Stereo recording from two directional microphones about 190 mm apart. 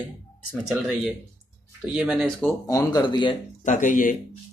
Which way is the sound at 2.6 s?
20° left (ahead or behind).